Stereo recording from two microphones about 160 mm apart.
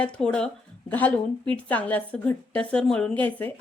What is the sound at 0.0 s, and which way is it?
Speech, 5° left (ahead or behind).